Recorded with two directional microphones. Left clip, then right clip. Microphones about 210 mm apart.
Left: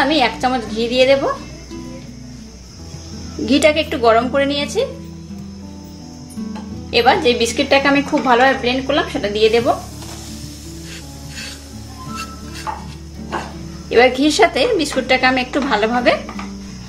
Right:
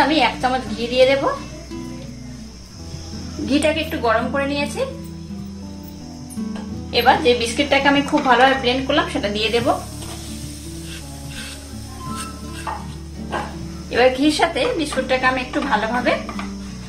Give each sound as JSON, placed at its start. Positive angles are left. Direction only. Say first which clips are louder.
{"t": 0.0, "sound": "a woman's voice", "louder": "left 1 dB", "side_deg": 30}
{"t": 3.6, "sound": "a woman's voice", "louder": "left 7 dB", "side_deg": 45}
{"t": 6.9, "sound": "a woman's voice", "louder": "left 2 dB", "side_deg": 35}
{"t": 13.8, "sound": "a woman's voice", "louder": "left 3 dB", "side_deg": 35}